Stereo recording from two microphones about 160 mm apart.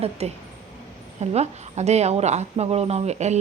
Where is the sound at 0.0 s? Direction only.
40° right (ahead or behind).